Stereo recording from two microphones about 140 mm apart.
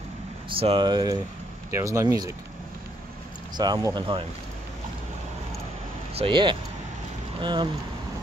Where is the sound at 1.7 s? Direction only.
20° right (ahead or behind).